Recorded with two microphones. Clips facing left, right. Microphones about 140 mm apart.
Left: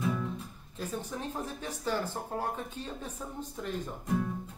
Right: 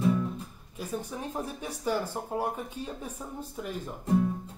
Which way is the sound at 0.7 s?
10° right (ahead or behind).